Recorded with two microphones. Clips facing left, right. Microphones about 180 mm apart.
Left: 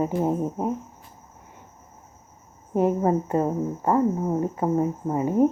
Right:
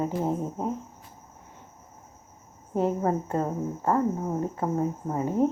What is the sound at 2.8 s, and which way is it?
Speech, 15° left (ahead or behind).